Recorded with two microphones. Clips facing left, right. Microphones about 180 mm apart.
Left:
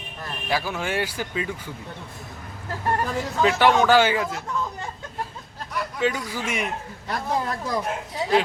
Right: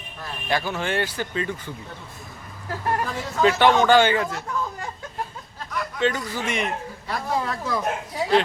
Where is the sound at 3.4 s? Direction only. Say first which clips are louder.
Right 1 dB; 5° left (ahead or behind).